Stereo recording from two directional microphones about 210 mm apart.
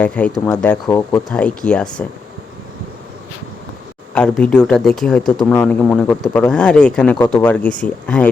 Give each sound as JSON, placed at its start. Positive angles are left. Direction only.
{"t": 0.0, "sound": "speech", "side_deg": 5}
{"t": 0.9, "sound": "speech", "side_deg": 15}
{"t": 1.3, "sound": "speech", "side_deg": 5}
{"t": 4.1, "sound": "speech", "side_deg": 5}